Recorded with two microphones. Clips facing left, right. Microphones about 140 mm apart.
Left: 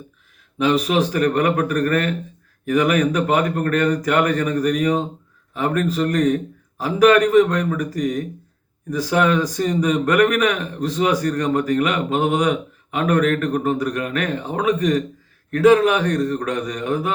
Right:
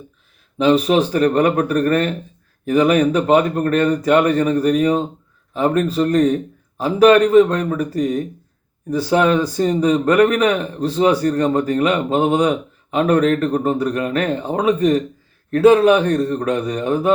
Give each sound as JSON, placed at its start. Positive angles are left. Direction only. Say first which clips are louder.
{"t": 0.6, "sound": "speech", "louder": "right 4 dB", "side_deg": -30}